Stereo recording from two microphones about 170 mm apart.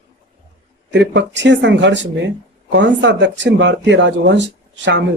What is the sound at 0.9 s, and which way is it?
Speech, 90° right.